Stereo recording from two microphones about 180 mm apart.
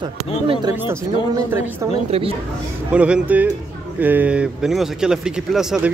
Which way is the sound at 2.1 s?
35° right (ahead or behind).